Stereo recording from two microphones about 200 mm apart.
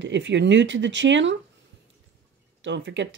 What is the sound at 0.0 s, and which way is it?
Speech, 65° right (ahead or behind).